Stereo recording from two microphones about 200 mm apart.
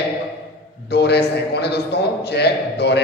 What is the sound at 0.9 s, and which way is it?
A man's voice, 55° left (ahead or behind).